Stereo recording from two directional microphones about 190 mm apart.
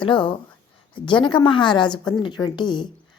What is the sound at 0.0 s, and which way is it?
A woman's voice, 25° left (ahead or behind).